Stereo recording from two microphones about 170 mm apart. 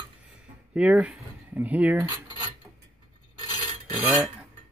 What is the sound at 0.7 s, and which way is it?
Speech, 5° right (ahead or behind).